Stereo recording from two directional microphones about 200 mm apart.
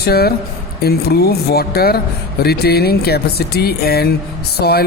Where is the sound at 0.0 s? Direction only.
50° left (ahead or behind).